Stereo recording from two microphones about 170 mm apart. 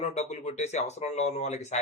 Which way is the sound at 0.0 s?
40° left (ahead or behind).